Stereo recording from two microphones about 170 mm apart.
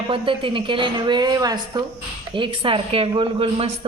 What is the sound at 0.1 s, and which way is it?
A woman's voice, 30° right (ahead or behind).